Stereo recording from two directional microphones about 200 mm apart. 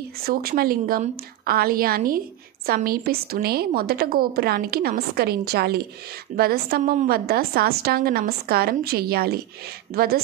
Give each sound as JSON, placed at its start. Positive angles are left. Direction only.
{"t": 0.2, "sound": "a woman's voice", "side_deg": -50}